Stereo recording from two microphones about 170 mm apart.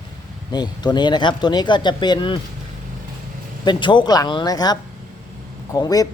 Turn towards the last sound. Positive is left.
turn(degrees=20)  # may be behind; listen again after turning